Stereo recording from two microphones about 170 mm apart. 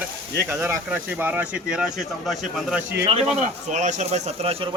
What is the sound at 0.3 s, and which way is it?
Speech, 15° right (ahead or behind).